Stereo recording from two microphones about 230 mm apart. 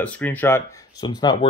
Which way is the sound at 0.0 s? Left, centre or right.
Centre.